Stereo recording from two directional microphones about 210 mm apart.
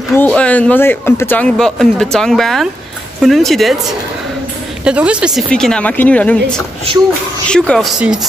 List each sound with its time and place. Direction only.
0.1 s speech: 5° left (ahead or behind)
4.8 s speech: 5° right (ahead or behind)
7.4 s speech: 5° left (ahead or behind)